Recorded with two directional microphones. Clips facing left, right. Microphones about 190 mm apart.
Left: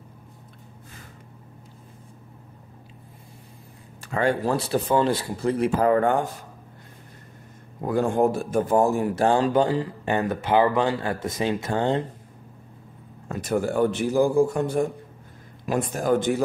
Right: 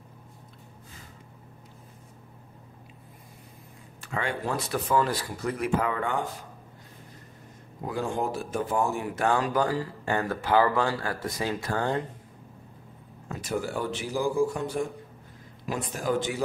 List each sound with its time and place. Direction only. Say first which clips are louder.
4.0 s speech: left 8 dB; 40° left (ahead or behind)
5.9 s speech: left 9 dB; 45° left (ahead or behind)
7.8 s speech: left 8 dB; 55° left (ahead or behind); by 12.0 s 20° left (ahead or behind)
13.3 s speech: left 6 dB; 55° left (ahead or behind)